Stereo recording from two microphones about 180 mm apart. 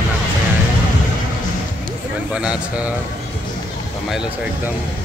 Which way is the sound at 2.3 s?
5° right (ahead or behind).